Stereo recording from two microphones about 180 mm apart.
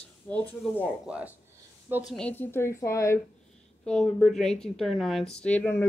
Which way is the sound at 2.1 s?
10° left (ahead or behind).